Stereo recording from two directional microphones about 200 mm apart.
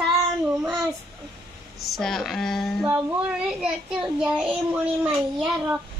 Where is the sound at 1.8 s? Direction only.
Centre (ahead or behind).